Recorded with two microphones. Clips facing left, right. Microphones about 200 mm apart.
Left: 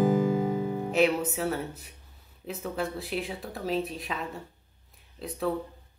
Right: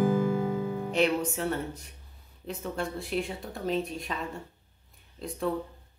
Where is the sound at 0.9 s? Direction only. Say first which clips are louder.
Left 2 dB; 5° left (ahead or behind).